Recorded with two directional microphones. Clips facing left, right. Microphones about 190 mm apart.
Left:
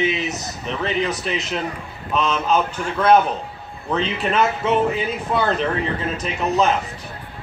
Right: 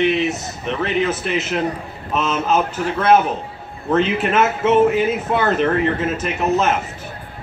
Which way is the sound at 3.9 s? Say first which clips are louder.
Right 4 dB; 5° right (ahead or behind).